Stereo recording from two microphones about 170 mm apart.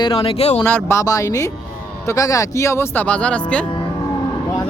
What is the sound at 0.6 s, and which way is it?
Speech, 15° left (ahead or behind).